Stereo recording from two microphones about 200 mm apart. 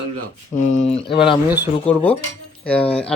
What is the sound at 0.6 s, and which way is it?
Speech, 35° left (ahead or behind).